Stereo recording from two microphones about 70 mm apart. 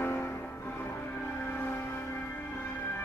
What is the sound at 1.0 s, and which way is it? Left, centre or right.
Music, left.